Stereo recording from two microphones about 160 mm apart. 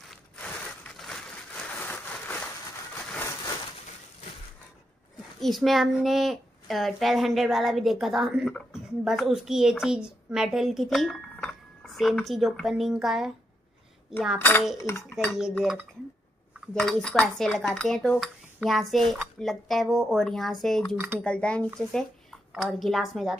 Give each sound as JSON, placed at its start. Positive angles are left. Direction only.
{"t": 0.4, "sound": "a sound", "side_deg": 5}
{"t": 5.4, "sound": "a child's voice", "side_deg": 0}
{"t": 14.8, "sound": "speech", "side_deg": 15}
{"t": 15.5, "sound": "a child's voice", "side_deg": 0}